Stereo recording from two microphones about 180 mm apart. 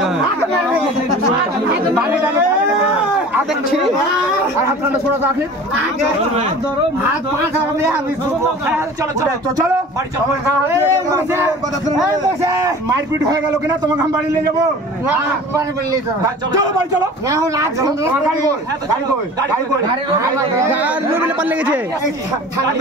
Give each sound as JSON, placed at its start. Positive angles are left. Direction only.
{"t": 10.4, "sound": "a man's voice", "side_deg": -15}
{"t": 17.3, "sound": "a man's voice", "side_deg": -20}
{"t": 20.2, "sound": "a man's voice", "side_deg": -15}